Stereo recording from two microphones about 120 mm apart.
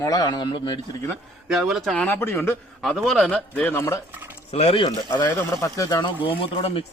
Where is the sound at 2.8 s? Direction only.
Centre (ahead or behind); by 3.9 s 20° left (ahead or behind).